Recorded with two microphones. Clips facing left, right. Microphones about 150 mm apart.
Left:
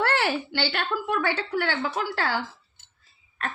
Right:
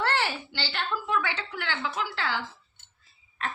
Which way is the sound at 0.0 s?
60° left (ahead or behind).